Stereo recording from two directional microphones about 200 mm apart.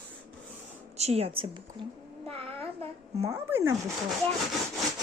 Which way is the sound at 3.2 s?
15° right (ahead or behind).